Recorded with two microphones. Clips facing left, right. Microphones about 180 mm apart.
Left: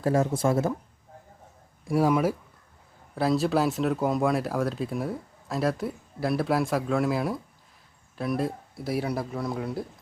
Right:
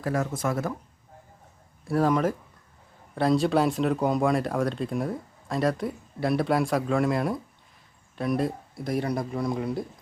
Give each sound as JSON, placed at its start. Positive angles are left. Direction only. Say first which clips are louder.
{"t": 0.0, "sound": "speech", "louder": "left 4 dB", "side_deg": 25}
{"t": 1.9, "sound": "speech", "louder": "even", "side_deg": 10}